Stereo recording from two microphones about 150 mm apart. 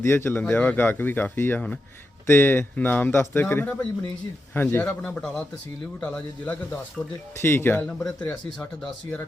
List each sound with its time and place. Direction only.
0.0 s speech: 15° left (ahead or behind)